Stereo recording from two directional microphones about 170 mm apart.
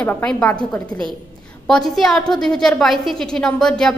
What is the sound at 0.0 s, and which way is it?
A woman's voice, 5° left (ahead or behind).